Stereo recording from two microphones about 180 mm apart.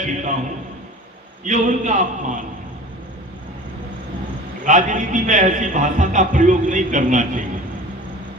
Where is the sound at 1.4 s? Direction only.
45° right (ahead or behind).